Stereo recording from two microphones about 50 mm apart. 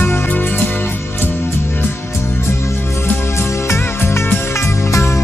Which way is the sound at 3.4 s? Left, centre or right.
Left.